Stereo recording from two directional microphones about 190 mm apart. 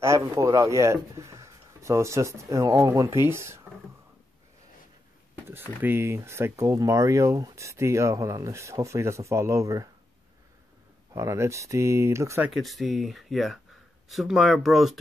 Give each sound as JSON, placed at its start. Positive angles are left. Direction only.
{"t": 0.0, "sound": "speech", "side_deg": -15}
{"t": 5.5, "sound": "speech", "side_deg": -10}
{"t": 11.1, "sound": "speech", "side_deg": -15}
{"t": 12.4, "sound": "speech", "side_deg": 0}